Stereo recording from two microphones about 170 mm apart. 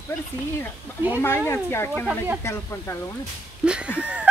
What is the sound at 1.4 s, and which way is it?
Speech, 15° left (ahead or behind).